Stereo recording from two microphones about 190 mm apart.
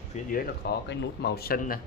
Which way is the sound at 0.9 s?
60° left (ahead or behind).